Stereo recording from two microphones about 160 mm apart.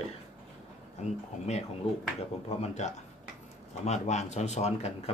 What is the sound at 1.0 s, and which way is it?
Speech, 40° left (ahead or behind).